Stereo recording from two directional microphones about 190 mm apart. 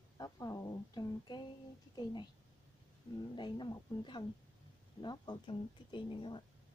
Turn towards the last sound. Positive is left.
turn(degrees=25)  # may be behind; listen again after turning